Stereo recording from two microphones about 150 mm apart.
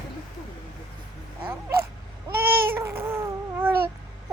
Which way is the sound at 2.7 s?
15° right (ahead or behind).